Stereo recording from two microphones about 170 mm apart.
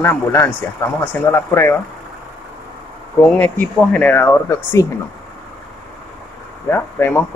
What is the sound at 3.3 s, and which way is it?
Speech, 10° left (ahead or behind).